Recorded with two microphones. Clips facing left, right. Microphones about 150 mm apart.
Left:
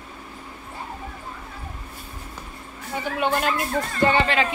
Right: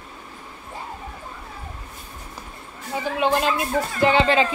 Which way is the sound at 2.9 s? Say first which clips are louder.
Right 2 dB; 25° right (ahead or behind).